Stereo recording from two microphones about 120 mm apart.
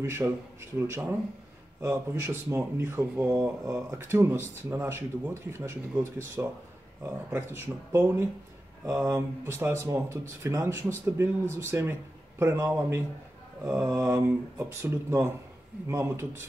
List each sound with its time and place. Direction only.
0.0 s speech: 20° right (ahead or behind)